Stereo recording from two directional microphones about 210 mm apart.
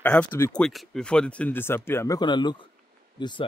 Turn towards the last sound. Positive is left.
turn(degrees=20)  # may be behind; listen again after turning